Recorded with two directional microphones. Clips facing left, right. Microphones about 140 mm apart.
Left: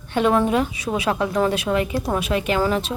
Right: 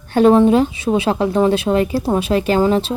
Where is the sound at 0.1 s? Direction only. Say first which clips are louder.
Right 7 dB; 35° right (ahead or behind).